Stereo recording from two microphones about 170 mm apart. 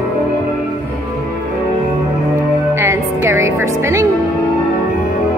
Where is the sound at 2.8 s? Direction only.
15° right (ahead or behind).